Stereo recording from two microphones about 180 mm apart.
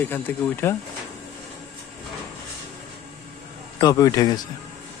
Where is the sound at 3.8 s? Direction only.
20° left (ahead or behind).